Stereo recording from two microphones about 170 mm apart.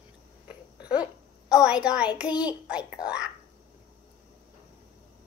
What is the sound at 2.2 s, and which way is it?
Speech, 25° left (ahead or behind).